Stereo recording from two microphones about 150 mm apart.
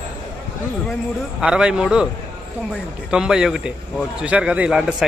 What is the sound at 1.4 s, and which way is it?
Speech, 5° right (ahead or behind).